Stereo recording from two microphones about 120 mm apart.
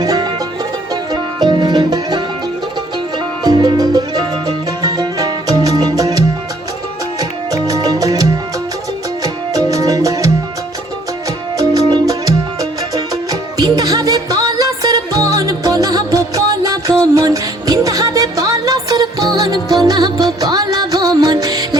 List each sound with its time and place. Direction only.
0.0 s music: 35° right (ahead or behind)
3.4 s music: 35° right (ahead or behind)
11.5 s music: 30° right (ahead or behind)